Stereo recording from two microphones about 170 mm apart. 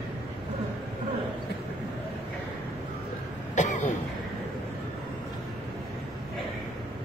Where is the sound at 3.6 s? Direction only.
45° left (ahead or behind).